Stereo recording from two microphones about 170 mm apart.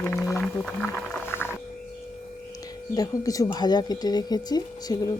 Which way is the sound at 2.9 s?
20° left (ahead or behind).